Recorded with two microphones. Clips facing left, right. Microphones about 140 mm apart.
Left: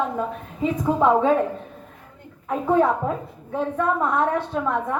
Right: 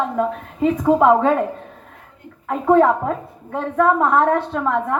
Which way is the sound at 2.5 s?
65° right (ahead or behind).